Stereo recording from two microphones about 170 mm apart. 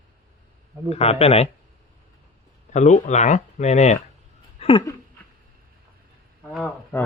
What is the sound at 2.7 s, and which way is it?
Speech, 45° left (ahead or behind).